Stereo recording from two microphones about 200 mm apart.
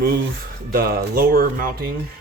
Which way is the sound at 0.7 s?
50° right (ahead or behind).